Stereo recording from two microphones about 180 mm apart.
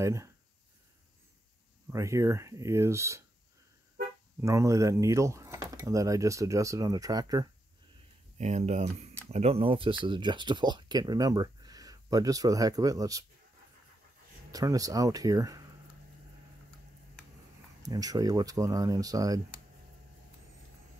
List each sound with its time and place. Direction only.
0.0 s speech: 15° right (ahead or behind)
1.9 s speech: 15° right (ahead or behind)
4.4 s speech: 15° right (ahead or behind)
8.4 s speech: 40° right (ahead or behind); by 13.2 s 20° right (ahead or behind)
14.5 s speech: 20° right (ahead or behind)
17.8 s speech: 20° right (ahead or behind)